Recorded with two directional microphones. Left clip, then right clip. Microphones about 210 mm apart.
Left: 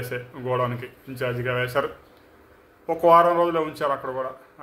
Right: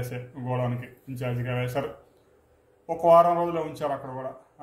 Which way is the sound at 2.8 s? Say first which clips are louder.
Left 2 dB; 10° left (ahead or behind).